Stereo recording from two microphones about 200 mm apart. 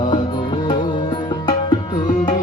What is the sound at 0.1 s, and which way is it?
Music, 25° left (ahead or behind).